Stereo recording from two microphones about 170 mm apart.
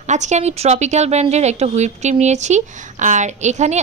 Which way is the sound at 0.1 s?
45° right (ahead or behind).